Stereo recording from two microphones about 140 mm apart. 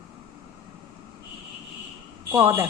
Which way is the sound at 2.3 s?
15° right (ahead or behind).